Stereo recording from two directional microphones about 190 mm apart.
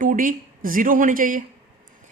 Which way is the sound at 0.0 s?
45° right (ahead or behind).